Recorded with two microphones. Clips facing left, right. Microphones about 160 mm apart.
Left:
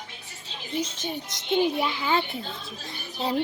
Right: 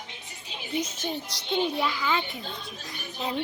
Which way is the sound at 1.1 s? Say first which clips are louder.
Left 5 dB; 20° left (ahead or behind).